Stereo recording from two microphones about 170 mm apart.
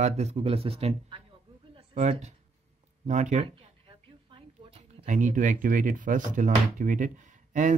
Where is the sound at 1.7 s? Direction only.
40° right (ahead or behind).